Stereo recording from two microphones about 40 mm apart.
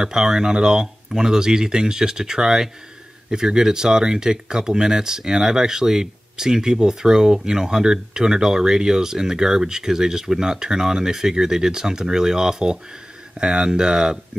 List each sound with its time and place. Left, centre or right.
0.0 s speech: centre